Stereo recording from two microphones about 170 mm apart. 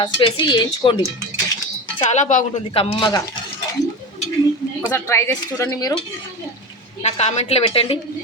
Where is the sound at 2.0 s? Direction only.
45° left (ahead or behind); by 3.2 s 25° left (ahead or behind).